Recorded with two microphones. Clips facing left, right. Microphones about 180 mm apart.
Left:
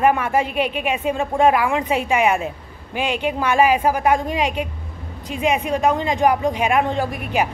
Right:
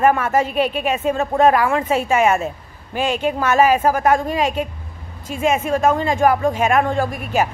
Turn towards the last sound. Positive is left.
turn(degrees=15)  # may be behind; listen again after turning